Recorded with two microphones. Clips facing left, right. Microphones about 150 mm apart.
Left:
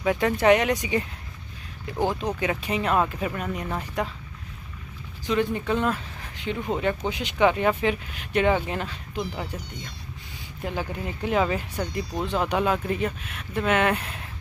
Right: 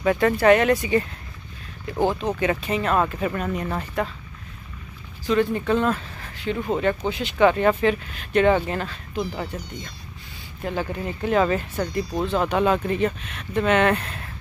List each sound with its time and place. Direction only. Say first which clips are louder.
0.0 s speech: right 3 dB; 10° left (ahead or behind)
2.4 s speech: right 3 dB; 10° left (ahead or behind)
5.2 s speech: right 3 dB; 15° left (ahead or behind)
10.6 s speech: right 3 dB; 10° left (ahead or behind)